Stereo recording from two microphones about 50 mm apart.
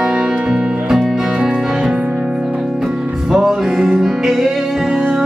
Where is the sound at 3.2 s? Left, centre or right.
Centre.